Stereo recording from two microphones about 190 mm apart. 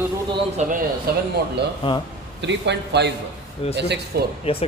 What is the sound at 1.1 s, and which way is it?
Speech, 55° right (ahead or behind).